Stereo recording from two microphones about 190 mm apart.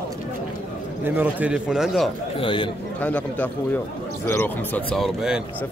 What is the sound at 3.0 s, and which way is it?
Speech, 10° left (ahead or behind).